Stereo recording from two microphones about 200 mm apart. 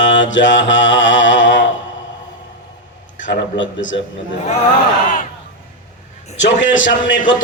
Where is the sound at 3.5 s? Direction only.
70° left (ahead or behind).